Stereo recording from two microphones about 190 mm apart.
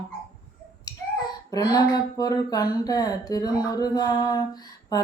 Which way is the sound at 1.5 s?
20° left (ahead or behind).